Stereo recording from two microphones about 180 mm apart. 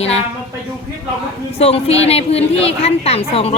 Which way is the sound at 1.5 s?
35° left (ahead or behind).